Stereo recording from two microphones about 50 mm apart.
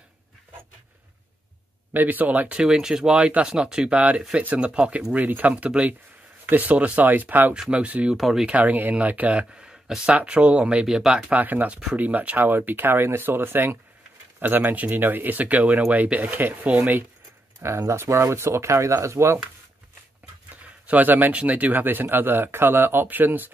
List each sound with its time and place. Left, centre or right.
2.0 s speech: right
2.5 s speech: centre
3.9 s speech: right
5.1 s speech: right
7.7 s speech: right
8.2 s speech: centre
8.5 s speech: right
11.0 s speech: centre
11.2 s speech: right
17.6 s speech: right
20.8 s speech: right